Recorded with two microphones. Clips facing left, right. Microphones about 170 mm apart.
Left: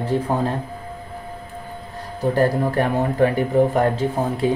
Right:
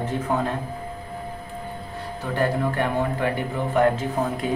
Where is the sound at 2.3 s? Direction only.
40° left (ahead or behind).